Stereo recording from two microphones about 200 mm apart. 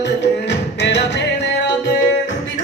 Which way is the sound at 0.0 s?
60° left (ahead or behind).